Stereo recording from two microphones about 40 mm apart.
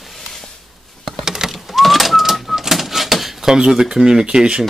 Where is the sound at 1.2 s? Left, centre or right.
Centre.